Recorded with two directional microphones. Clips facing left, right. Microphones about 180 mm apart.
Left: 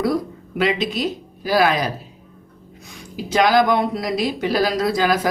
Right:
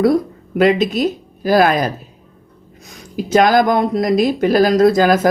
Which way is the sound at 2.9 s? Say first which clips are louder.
Right 7 dB; 45° right (ahead or behind).